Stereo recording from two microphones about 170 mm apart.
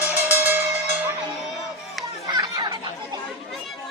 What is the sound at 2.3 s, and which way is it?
Chatter, 25° right (ahead or behind).